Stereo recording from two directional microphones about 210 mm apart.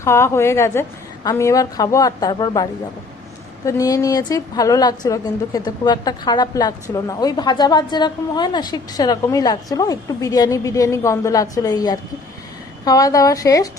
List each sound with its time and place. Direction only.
0.0 s a woman's voice: 10° left (ahead or behind)
3.7 s a woman's voice: 15° left (ahead or behind)